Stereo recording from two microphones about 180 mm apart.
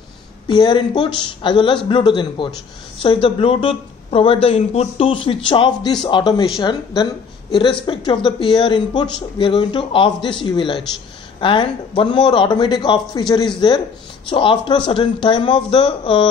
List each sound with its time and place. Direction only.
0.5 s speech: 25° left (ahead or behind)